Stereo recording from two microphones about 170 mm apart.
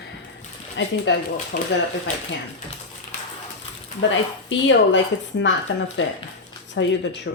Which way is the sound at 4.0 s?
90° left.